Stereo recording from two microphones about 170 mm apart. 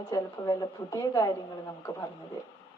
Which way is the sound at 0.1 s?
20° left (ahead or behind).